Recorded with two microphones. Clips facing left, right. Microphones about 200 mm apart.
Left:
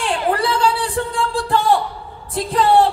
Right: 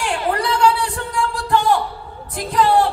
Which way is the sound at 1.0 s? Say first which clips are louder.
Left 3 dB; 30° left (ahead or behind).